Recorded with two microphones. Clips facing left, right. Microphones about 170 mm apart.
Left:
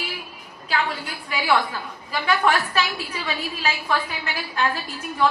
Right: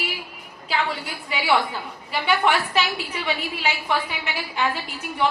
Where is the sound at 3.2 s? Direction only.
20° right (ahead or behind).